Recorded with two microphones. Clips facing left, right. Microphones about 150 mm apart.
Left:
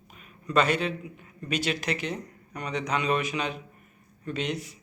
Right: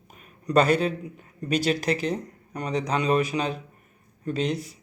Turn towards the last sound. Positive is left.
turn(degrees=-35)  # may be behind; listen again after turning